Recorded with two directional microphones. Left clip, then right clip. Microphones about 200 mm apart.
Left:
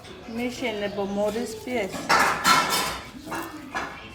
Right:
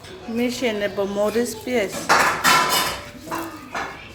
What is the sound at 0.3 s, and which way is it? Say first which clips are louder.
Speech: right 6 dB; 25° right (ahead or behind).